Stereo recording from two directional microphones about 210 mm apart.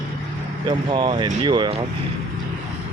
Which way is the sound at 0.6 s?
20° right (ahead or behind).